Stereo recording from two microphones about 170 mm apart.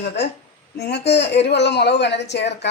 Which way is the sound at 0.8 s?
80° left.